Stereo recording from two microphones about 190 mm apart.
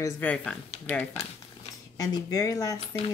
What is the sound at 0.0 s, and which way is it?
Speech, 10° left (ahead or behind).